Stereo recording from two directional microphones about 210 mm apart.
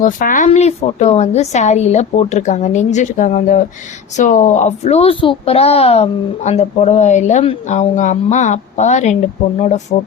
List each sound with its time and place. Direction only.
0.0 s a child's voice: 40° left (ahead or behind)